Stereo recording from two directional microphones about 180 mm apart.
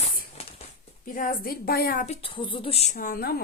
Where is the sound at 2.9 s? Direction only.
55° left (ahead or behind).